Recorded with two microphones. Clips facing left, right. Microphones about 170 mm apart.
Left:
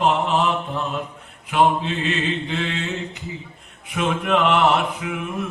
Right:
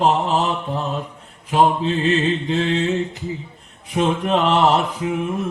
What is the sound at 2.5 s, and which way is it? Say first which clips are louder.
Mantra: right 6 dB; 35° right (ahead or behind).